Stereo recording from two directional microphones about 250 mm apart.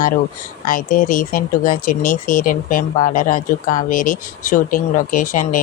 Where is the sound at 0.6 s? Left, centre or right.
Left.